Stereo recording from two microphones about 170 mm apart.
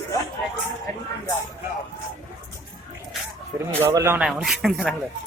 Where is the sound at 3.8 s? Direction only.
15° right (ahead or behind).